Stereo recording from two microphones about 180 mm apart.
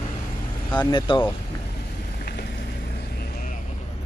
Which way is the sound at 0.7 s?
25° left (ahead or behind).